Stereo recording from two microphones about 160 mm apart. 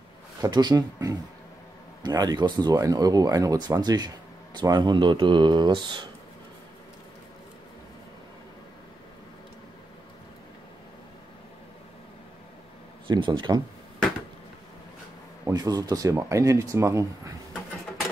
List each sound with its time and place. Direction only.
0.4 s speech: 25° right (ahead or behind)
13.0 s speech: 30° right (ahead or behind)
15.4 s speech: 25° right (ahead or behind)